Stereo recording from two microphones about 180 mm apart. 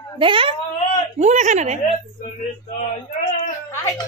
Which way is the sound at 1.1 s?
40° right (ahead or behind).